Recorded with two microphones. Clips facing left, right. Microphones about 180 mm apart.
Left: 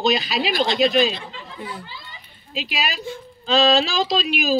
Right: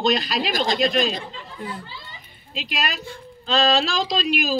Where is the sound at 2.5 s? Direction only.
Centre (ahead or behind).